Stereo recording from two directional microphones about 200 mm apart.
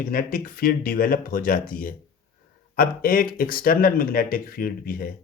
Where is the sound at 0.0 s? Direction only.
45° left (ahead or behind).